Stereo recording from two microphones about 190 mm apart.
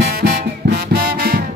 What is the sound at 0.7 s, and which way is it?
Music, 50° right (ahead or behind).